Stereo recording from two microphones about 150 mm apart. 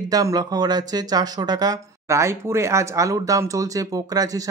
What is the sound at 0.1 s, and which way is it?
Speech, 25° right (ahead or behind).